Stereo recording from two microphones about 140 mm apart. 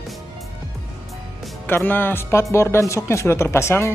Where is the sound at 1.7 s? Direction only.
15° left (ahead or behind).